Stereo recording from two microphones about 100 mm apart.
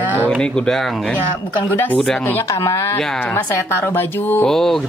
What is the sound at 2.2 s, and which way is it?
Speech, 20° left (ahead or behind).